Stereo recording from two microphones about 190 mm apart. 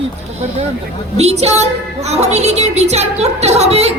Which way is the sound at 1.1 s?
35° right (ahead or behind).